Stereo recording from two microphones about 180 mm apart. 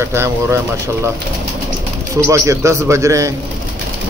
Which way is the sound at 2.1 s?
15° right (ahead or behind).